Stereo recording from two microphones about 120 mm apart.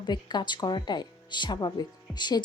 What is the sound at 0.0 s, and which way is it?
Speech, 40° left (ahead or behind).